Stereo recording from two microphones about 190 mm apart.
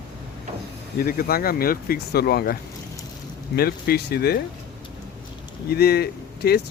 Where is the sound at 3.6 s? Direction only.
55° left (ahead or behind).